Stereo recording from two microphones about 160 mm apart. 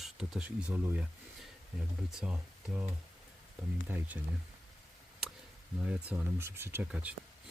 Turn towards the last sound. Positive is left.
turn(degrees=-10)  # may be behind; listen again after turning